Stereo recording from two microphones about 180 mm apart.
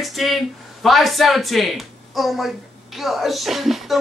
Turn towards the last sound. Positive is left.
turn(degrees=0)  # may be behind; listen again after turning